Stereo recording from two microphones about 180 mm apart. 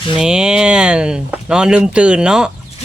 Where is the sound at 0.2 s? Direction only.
5° right (ahead or behind).